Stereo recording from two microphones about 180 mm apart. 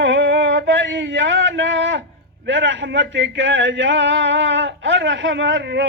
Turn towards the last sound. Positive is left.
turn(degrees=-80)